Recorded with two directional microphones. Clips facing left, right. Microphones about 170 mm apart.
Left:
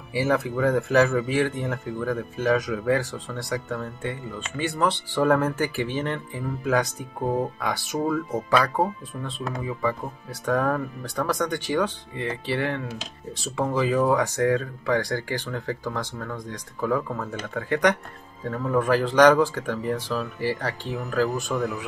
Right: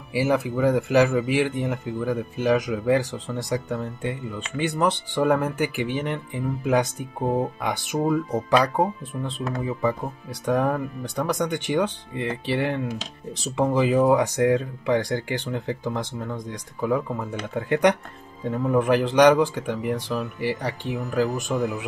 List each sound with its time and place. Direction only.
0.1 s a man's voice: 10° right (ahead or behind)